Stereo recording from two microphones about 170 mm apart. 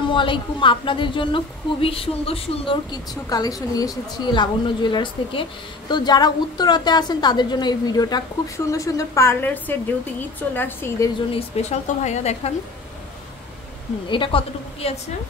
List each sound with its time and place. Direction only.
0.1 s a woman's voice: 30° left (ahead or behind); by 11.1 s 10° left (ahead or behind)
11.3 s speech: 40° left (ahead or behind)
14.0 s speech: 30° left (ahead or behind)